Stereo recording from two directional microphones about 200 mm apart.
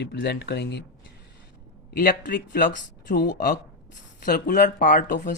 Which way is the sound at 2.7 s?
60° left (ahead or behind).